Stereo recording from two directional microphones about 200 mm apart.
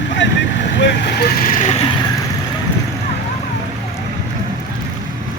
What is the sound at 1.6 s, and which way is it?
Vehicle, 35° left (ahead or behind).